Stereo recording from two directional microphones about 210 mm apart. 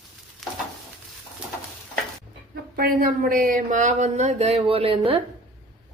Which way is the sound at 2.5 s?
45° right (ahead or behind).